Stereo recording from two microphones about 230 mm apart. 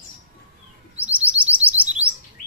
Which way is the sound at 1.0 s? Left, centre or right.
Centre.